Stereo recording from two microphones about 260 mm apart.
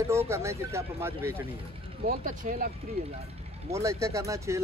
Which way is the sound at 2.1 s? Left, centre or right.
Right.